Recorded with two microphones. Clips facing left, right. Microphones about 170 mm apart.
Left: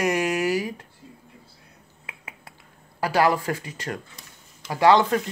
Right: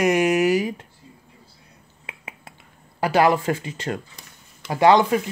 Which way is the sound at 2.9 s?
20° right (ahead or behind).